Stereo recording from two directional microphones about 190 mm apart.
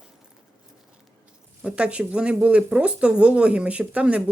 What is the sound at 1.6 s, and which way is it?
Speech, 5° right (ahead or behind).